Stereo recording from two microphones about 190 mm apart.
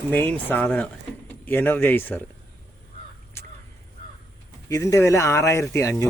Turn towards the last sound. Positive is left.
turn(degrees=15)  # may be behind; listen again after turning